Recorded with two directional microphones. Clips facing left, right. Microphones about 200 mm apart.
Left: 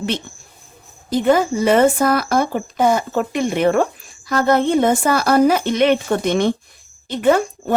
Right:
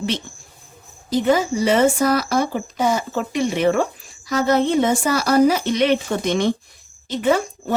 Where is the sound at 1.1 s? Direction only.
55° left (ahead or behind).